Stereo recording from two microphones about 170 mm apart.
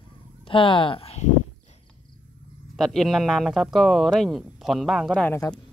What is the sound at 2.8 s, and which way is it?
Speech, centre (ahead or behind).